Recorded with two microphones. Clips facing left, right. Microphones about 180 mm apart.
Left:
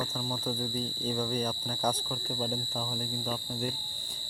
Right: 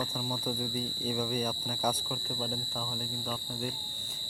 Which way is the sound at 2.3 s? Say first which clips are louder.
Left 4 dB; 5° left (ahead or behind).